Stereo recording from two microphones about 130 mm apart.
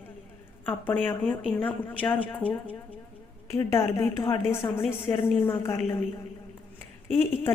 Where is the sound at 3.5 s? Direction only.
20° left (ahead or behind).